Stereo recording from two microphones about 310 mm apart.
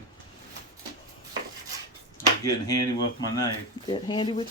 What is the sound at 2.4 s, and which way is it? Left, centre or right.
Speech, centre.